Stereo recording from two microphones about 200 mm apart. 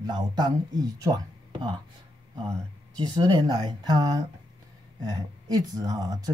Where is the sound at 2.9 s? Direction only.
20° right (ahead or behind).